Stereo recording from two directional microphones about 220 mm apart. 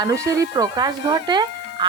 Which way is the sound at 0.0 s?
15° right (ahead or behind).